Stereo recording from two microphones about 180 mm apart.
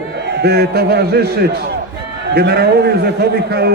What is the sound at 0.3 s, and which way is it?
A man's voice, 65° right (ahead or behind).